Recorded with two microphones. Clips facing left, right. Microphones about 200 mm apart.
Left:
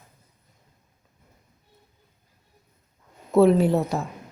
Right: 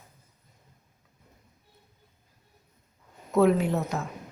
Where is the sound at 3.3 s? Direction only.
30° left (ahead or behind).